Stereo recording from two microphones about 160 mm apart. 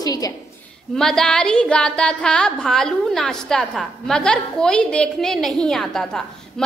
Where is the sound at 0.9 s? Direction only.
5° left (ahead or behind).